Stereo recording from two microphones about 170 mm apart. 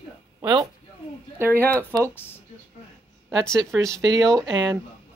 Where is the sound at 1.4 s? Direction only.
15° right (ahead or behind).